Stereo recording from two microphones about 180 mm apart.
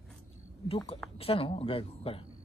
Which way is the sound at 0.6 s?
30° left (ahead or behind).